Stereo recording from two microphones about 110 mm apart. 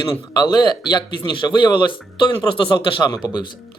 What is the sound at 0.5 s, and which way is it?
Speech, 45° left (ahead or behind).